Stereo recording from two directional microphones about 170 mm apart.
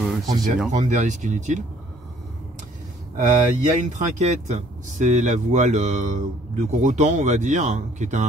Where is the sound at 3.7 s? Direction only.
45° right (ahead or behind).